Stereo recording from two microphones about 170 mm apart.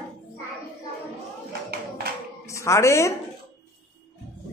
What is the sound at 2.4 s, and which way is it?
Speech, 15° left (ahead or behind).